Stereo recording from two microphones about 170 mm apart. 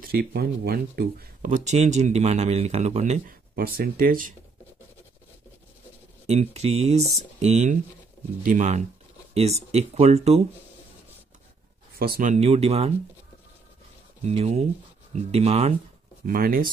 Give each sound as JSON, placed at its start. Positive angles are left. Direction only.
{"t": 0.0, "sound": "speech", "side_deg": -65}
{"t": 3.5, "sound": "speech", "side_deg": -60}
{"t": 6.2, "sound": "speech", "side_deg": -40}
{"t": 12.0, "sound": "speech", "side_deg": -60}
{"t": 12.3, "sound": "speech", "side_deg": -35}
{"t": 14.2, "sound": "speech", "side_deg": -40}
{"t": 16.3, "sound": "speech", "side_deg": -55}